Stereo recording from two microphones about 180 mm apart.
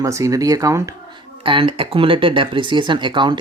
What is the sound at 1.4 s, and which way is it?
Speech, 30° right (ahead or behind).